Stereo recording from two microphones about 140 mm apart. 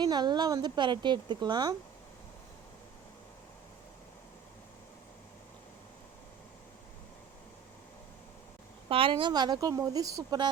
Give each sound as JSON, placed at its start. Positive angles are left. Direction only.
{"t": 0.0, "sound": "a woman's voice", "side_deg": -30}
{"t": 8.9, "sound": "speech", "side_deg": -40}